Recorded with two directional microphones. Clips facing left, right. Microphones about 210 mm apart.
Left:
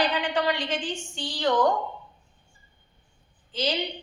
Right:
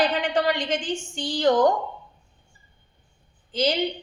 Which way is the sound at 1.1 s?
45° right (ahead or behind).